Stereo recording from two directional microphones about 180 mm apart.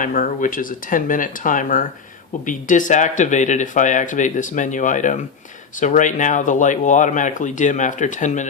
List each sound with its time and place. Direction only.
0.0 s speech: 50° left (ahead or behind)